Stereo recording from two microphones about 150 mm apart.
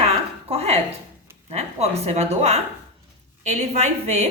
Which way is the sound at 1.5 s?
45° right (ahead or behind).